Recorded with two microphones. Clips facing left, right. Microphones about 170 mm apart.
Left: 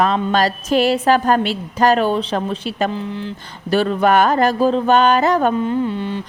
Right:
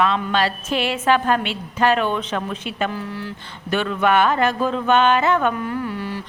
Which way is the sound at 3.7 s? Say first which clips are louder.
Left 4 dB; 35° left (ahead or behind).